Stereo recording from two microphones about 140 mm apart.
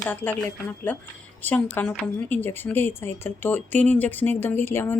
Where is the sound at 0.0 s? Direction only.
15° left (ahead or behind).